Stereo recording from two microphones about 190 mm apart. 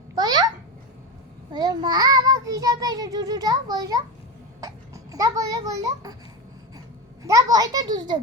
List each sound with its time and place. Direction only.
0.2 s babbling: 20° right (ahead or behind)
1.5 s child singing: 20° right (ahead or behind)
4.6 s a child's voice: 20° right (ahead or behind)